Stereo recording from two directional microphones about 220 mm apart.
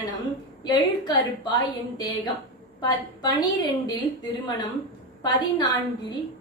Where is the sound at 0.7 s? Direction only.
20° left (ahead or behind).